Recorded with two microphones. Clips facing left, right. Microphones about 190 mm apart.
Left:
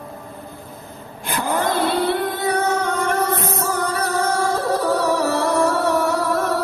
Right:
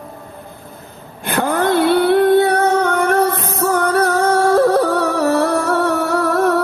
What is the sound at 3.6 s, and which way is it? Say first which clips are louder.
Music: right 8 dB; 60° right (ahead or behind).